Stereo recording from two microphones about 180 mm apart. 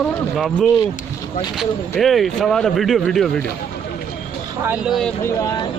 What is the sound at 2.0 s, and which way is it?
Speech, centre (ahead or behind).